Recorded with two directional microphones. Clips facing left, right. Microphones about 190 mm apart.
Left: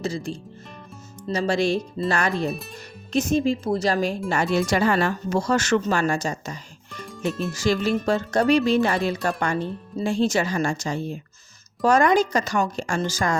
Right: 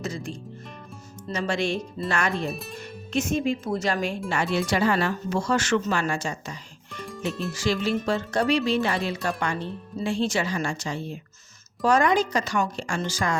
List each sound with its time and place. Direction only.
0.0 s speech: 30° left (ahead or behind)
2.5 s speech: centre (ahead or behind)
3.1 s speech: 40° left (ahead or behind)
7.3 s speech: centre (ahead or behind)
7.5 s speech: 45° left (ahead or behind)